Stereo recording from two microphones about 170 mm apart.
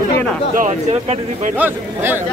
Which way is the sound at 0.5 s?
45° right (ahead or behind).